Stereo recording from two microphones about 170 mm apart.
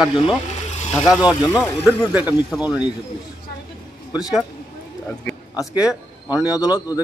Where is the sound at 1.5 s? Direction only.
10° left (ahead or behind).